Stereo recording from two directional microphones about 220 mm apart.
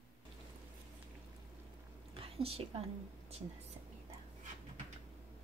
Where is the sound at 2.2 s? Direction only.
25° right (ahead or behind).